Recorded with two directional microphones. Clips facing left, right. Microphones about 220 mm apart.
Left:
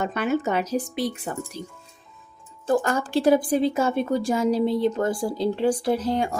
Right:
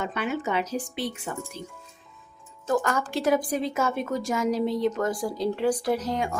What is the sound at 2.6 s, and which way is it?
Speech, 30° left (ahead or behind).